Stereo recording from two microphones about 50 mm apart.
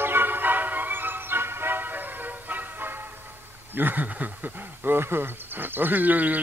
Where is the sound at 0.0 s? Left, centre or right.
Right.